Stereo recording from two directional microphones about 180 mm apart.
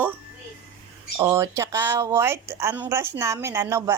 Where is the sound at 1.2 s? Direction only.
15° right (ahead or behind).